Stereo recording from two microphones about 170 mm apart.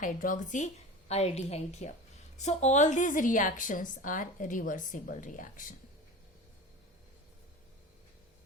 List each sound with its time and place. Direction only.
0.0 s a woman's voice: 50° left (ahead or behind)